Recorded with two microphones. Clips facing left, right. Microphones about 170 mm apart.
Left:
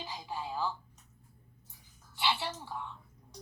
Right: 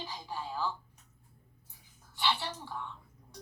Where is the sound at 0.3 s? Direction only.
15° left (ahead or behind).